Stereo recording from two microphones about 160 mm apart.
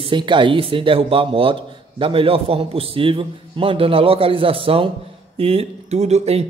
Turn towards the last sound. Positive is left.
turn(degrees=-40)  # may be behind; listen again after turning